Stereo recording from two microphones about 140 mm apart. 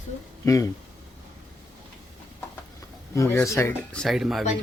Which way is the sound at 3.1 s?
20° left (ahead or behind).